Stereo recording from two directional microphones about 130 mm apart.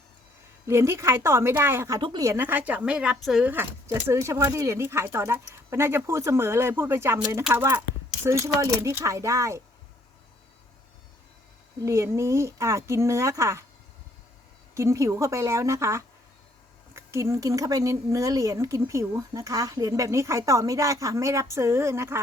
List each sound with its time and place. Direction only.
0.7 s speech: 20° right (ahead or behind)
2.0 s speech: 35° right (ahead or behind)
2.2 s speech: 20° right (ahead or behind)
3.5 s speech: 20° right (ahead or behind)
11.9 s speech: 20° right (ahead or behind)
14.8 s speech: 20° right (ahead or behind)